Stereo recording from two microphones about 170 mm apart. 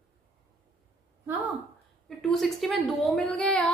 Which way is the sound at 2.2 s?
Centre (ahead or behind).